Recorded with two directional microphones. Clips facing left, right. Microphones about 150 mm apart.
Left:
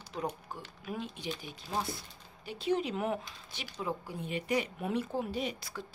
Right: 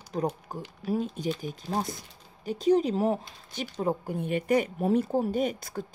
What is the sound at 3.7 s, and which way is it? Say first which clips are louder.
Speech: right 8 dB; 45° right (ahead or behind).